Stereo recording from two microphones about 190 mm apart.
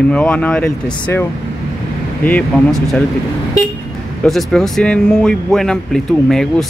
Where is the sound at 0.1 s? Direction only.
5° left (ahead or behind).